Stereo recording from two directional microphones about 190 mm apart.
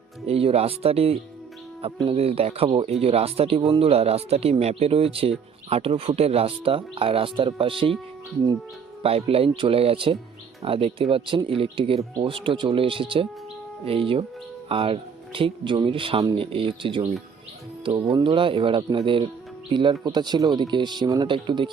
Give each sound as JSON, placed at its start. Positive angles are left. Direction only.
{"t": 0.3, "sound": "speech", "side_deg": -30}
{"t": 9.0, "sound": "speech", "side_deg": -30}